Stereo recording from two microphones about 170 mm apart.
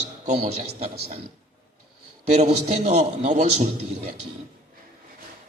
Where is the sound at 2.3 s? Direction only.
40° right (ahead or behind).